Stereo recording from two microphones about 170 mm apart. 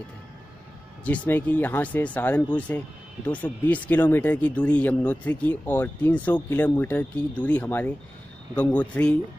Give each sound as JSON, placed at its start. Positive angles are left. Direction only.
{"t": 1.0, "sound": "speech", "side_deg": 10}